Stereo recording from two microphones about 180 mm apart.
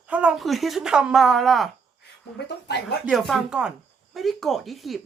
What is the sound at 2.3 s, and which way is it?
Speech, 70° left (ahead or behind).